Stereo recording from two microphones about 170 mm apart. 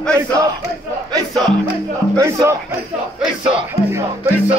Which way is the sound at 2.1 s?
20° right (ahead or behind).